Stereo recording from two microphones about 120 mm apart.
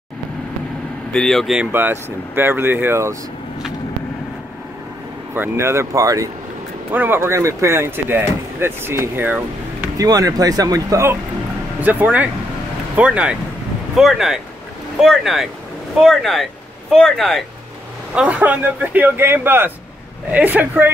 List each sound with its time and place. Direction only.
1.1 s speech: 5° left (ahead or behind)
1.6 s speech: 15° right (ahead or behind)
5.3 s speech: 20° right (ahead or behind)
6.9 s speech: 15° right (ahead or behind)
9.9 s speech: 30° right (ahead or behind)
11.8 s speech: 15° right (ahead or behind); by 17.5 s centre (ahead or behind)
18.1 s speech: 10° right (ahead or behind)